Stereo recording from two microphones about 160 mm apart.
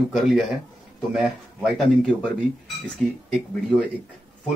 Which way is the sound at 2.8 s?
Centre (ahead or behind).